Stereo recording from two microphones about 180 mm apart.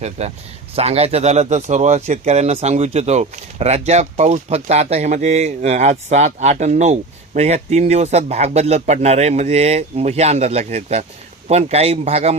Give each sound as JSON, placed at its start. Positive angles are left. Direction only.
{"t": 0.0, "sound": "speech", "side_deg": -35}